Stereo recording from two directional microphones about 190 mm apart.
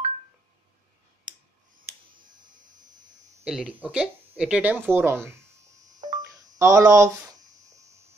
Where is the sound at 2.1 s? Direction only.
45° right (ahead or behind).